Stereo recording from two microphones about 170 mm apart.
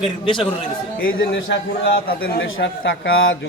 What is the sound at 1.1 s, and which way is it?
A man's voice, 90° left.